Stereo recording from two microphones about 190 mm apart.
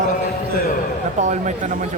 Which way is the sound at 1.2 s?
40° right (ahead or behind).